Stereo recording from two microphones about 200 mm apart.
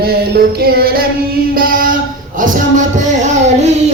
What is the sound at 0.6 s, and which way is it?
Music, 50° right (ahead or behind).